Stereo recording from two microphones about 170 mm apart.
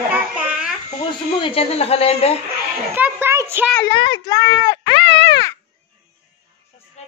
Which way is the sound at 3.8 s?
25° left (ahead or behind).